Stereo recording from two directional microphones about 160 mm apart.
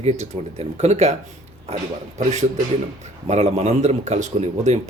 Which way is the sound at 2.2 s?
45° right (ahead or behind).